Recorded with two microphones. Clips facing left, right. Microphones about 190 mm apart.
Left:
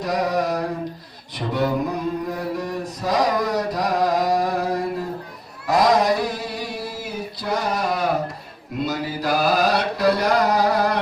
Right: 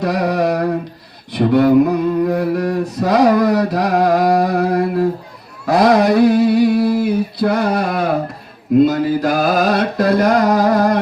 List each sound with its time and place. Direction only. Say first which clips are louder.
0.0 s mantra: right 5 dB; 65° right (ahead or behind)
1.3 s speech: right 10 dB; 65° right (ahead or behind)
2.2 s mantra: right 10 dB; 65° right (ahead or behind)
5.6 s a sound: right 5 dB; 65° right (ahead or behind)
8.8 s mantra: right 10 dB; 55° right (ahead or behind)